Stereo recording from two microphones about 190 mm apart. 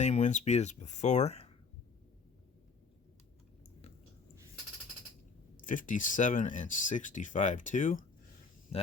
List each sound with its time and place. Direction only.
0.0 s speech: 35° left (ahead or behind)
5.5 s speech: 45° left (ahead or behind)